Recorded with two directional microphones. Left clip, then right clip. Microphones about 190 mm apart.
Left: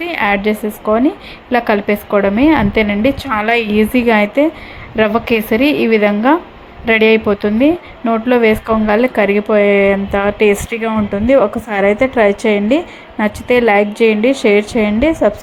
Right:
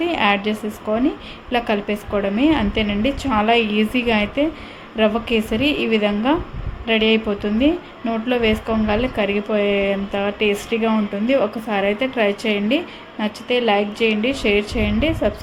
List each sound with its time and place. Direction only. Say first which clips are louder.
0.0 s speech: left 4 dB; 25° left (ahead or behind)